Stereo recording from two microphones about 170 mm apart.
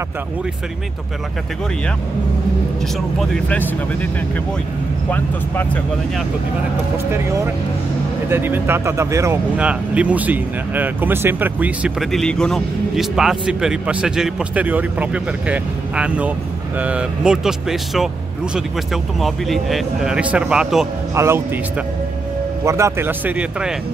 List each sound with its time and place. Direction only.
3.2 s speech: 5° left (ahead or behind)
7.1 s speech: 15° right (ahead or behind)
22.7 s speech: 15° right (ahead or behind)